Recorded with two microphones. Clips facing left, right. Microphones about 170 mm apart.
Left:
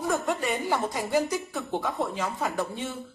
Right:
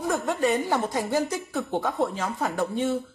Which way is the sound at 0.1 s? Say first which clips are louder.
Right 4 dB; centre (ahead or behind).